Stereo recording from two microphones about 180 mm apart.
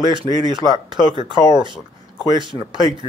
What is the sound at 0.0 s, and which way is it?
Speech, 25° right (ahead or behind).